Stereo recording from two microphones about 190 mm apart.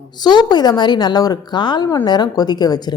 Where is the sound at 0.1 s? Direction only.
20° left (ahead or behind).